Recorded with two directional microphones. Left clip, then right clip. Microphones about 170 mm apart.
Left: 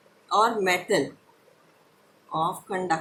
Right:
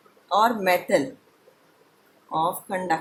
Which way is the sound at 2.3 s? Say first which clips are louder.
Right 2 dB; 30° right (ahead or behind).